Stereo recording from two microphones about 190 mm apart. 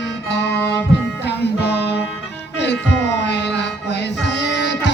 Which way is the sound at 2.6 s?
65° left (ahead or behind).